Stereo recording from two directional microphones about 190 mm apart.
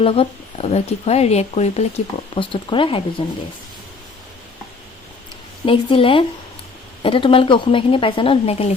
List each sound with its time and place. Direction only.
0.0 s a woman's voice: 30° left (ahead or behind)
5.6 s a woman's voice: 25° left (ahead or behind)